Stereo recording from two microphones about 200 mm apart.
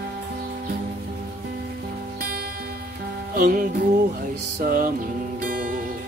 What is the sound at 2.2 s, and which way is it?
Music, 50° right (ahead or behind).